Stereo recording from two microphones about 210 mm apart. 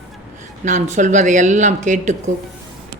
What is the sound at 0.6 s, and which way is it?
A woman's voice, 35° right (ahead or behind).